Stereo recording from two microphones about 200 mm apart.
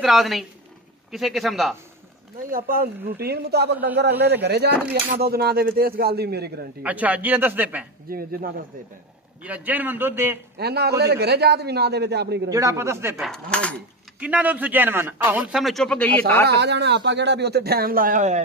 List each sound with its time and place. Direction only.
0.0 s speech: centre (ahead or behind)
2.5 s a man's voice: 45° right (ahead or behind)
6.8 s a man's voice: 5° right (ahead or behind)
8.1 s a man's voice: 45° right (ahead or behind)
9.4 s a man's voice: 5° right (ahead or behind)
10.6 s a man's voice: 55° right (ahead or behind)
12.4 s a man's voice: 15° right (ahead or behind)
13.2 s speech: 5° left (ahead or behind)
14.2 s a man's voice: 5° right (ahead or behind); by 16.4 s 10° left (ahead or behind)
16.4 s a man's voice: 60° right (ahead or behind); by 18.4 s 40° right (ahead or behind)